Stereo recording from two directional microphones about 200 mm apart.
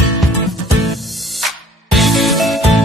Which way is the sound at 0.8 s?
Centre (ahead or behind).